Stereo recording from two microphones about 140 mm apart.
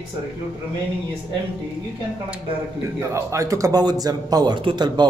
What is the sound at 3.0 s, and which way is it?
A man's voice, 20° right (ahead or behind).